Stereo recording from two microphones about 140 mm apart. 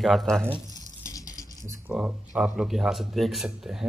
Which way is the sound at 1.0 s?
25° left (ahead or behind).